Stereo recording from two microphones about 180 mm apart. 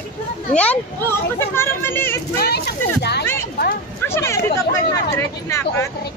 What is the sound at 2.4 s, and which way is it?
Speech, 65° left (ahead or behind).